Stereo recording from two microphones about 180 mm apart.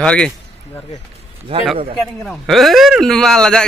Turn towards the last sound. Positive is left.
turn(degrees=5)  # may be behind; listen again after turning